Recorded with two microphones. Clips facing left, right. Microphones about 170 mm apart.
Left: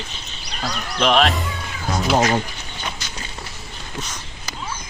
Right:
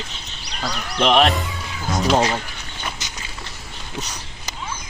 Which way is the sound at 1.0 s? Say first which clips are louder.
Right 1 dB; 15° right (ahead or behind).